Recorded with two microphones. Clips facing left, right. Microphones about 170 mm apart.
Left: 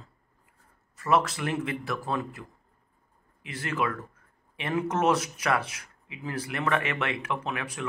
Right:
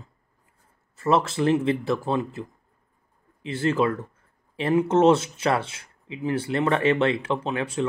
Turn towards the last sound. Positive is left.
turn(degrees=-25)  # may be behind; listen again after turning